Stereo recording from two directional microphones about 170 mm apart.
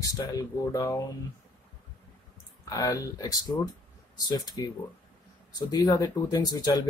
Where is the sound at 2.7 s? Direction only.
20° left (ahead or behind).